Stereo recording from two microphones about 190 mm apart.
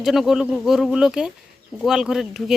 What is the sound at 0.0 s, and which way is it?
Speech, centre (ahead or behind).